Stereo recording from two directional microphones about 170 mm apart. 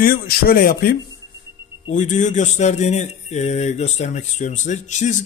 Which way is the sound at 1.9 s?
45° left (ahead or behind).